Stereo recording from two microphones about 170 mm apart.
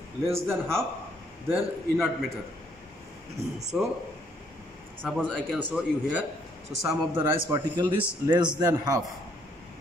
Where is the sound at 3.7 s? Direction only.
5° right (ahead or behind).